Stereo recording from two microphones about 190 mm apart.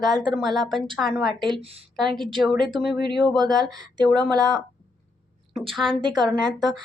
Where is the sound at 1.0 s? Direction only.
Centre (ahead or behind).